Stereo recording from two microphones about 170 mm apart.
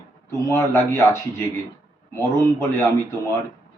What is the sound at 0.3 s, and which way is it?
A man's voice, 15° left (ahead or behind).